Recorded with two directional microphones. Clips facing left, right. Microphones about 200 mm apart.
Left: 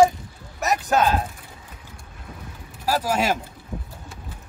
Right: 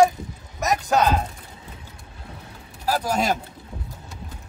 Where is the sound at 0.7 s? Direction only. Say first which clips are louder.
Even; 5° left (ahead or behind).